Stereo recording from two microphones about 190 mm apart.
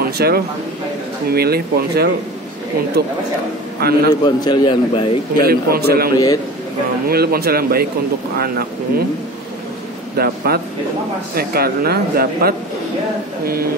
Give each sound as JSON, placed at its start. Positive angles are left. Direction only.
{"t": 0.0, "sound": "a sound", "side_deg": -55}
{"t": 1.3, "sound": "speech", "side_deg": -55}
{"t": 4.2, "sound": "a man's voice", "side_deg": 25}
{"t": 5.4, "sound": "speech", "side_deg": -50}
{"t": 6.1, "sound": "a man's voice", "side_deg": 20}
{"t": 7.1, "sound": "speech", "side_deg": -55}
{"t": 10.1, "sound": "speech", "side_deg": -55}